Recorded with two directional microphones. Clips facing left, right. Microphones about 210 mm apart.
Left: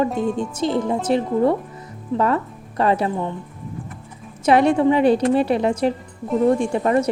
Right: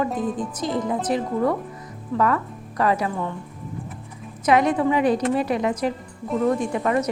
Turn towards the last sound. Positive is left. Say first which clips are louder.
# left 4 dB
turn(degrees=30)  # may be behind; listen again after turning